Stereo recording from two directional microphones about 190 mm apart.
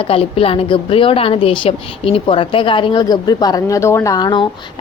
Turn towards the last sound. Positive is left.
turn(degrees=25)  # may be behind; listen again after turning